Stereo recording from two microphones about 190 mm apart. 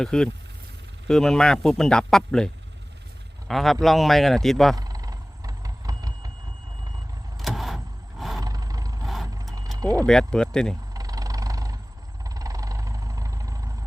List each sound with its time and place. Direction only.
0.0 s a man's voice: 5° left (ahead or behind)
4.8 s a sound: 20° right (ahead or behind)
7.3 s vehicle: centre (ahead or behind)
8.4 s vehicle: 20° right (ahead or behind)
9.0 s vehicle: centre (ahead or behind)
10.1 s a man's voice: 5° left (ahead or behind)
10.9 s vehicle: 20° right (ahead or behind)